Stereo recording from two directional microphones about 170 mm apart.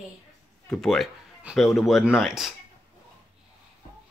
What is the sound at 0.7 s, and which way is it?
Speech, centre (ahead or behind).